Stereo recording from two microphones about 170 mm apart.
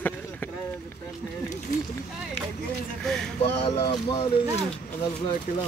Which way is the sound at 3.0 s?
5° left (ahead or behind).